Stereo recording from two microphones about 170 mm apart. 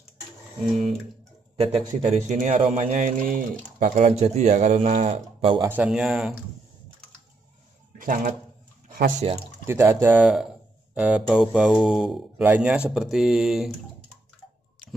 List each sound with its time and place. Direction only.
1.6 s a man's voice: 40° right (ahead or behind)
5.6 s speech: 10° right (ahead or behind)
8.0 s speech: 55° right (ahead or behind)
8.8 s a sound: 55° right (ahead or behind)
9.7 s speech: 15° right (ahead or behind)